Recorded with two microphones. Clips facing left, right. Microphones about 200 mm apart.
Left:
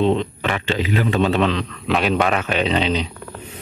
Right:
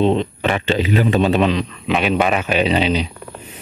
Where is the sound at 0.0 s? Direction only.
20° right (ahead or behind).